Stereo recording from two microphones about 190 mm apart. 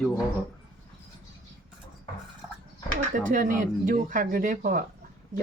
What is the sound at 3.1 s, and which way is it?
Speech, 45° right (ahead or behind).